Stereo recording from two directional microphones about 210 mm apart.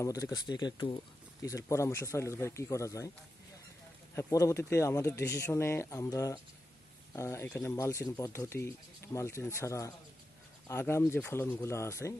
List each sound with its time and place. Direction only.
0.0 s speech: 15° left (ahead or behind)
4.1 s speech: 15° left (ahead or behind)